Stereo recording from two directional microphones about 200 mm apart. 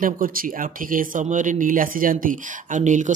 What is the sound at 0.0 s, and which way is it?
Speech, 45° right (ahead or behind).